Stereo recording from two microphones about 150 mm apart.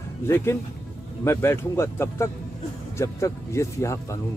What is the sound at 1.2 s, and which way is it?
A man's voice, 15° left (ahead or behind).